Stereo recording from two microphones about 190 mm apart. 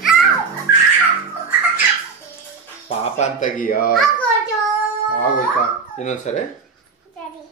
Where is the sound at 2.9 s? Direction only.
40° left (ahead or behind).